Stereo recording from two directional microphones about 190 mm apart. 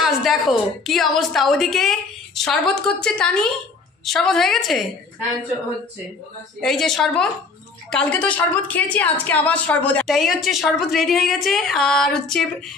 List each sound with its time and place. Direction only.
0.0 s a woman's voice: centre (ahead or behind)
6.6 s a woman's voice: centre (ahead or behind)